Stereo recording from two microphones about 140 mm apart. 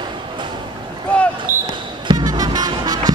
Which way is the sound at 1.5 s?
75° right (ahead or behind).